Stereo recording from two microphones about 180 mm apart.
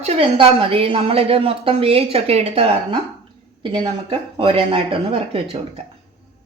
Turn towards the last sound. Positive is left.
turn(degrees=-35)  # may be behind; listen again after turning